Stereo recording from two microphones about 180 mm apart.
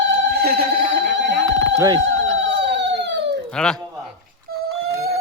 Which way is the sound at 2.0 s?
90° right.